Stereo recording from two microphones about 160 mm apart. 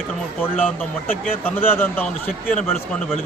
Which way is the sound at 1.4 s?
10° left (ahead or behind).